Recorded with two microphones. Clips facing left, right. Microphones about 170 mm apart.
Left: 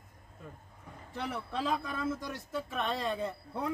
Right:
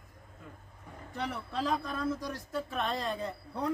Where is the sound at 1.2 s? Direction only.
Centre (ahead or behind).